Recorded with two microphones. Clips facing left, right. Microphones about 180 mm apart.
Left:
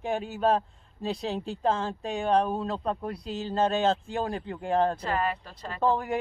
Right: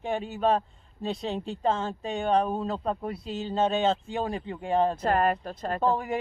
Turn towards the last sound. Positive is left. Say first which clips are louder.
# even
turn(degrees=0)  # may be behind; listen again after turning